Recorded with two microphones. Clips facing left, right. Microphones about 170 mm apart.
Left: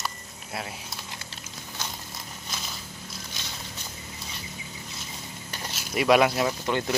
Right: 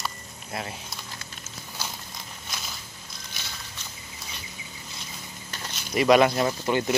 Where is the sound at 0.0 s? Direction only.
5° left (ahead or behind).